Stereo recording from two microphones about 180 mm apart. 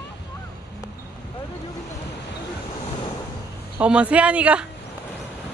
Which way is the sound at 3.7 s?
5° right (ahead or behind).